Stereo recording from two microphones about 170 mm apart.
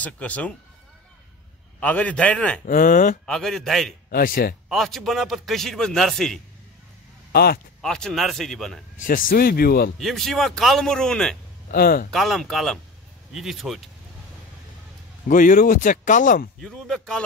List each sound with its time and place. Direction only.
0.0 s a man's voice: 10° left (ahead or behind)
1.8 s a man's voice: 10° left (ahead or behind)
2.6 s speech: 55° left (ahead or behind)
3.3 s a man's voice: centre (ahead or behind)
4.1 s speech: 60° left (ahead or behind)
4.6 s a man's voice: centre (ahead or behind)
7.3 s speech: 65° left (ahead or behind)
7.8 s a man's voice: 5° left (ahead or behind)
9.0 s speech: 55° left (ahead or behind)
9.9 s a man's voice: centre (ahead or behind)
11.7 s speech: 65° left (ahead or behind)
12.1 s a man's voice: centre (ahead or behind)
15.2 s speech: 55° left (ahead or behind)
16.6 s a man's voice: centre (ahead or behind)